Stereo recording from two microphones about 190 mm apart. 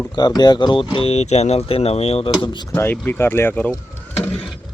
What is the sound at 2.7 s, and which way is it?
Speech, 10° left (ahead or behind).